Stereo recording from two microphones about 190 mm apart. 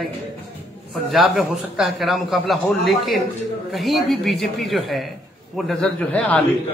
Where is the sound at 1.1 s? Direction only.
Centre (ahead or behind).